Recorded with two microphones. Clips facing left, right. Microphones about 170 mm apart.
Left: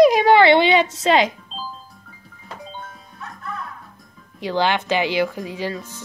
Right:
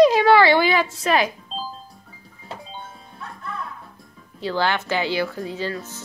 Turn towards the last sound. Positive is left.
turn(degrees=15)  # may be behind; listen again after turning